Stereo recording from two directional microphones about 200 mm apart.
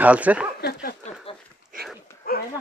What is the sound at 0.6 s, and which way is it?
Speech, 55° left (ahead or behind).